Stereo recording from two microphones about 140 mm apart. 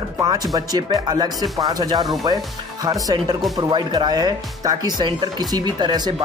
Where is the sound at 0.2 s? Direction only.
25° right (ahead or behind).